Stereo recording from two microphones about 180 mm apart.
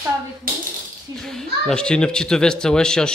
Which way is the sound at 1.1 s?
Centre (ahead or behind).